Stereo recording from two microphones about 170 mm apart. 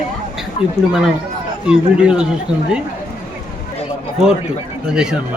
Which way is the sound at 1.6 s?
5° right (ahead or behind).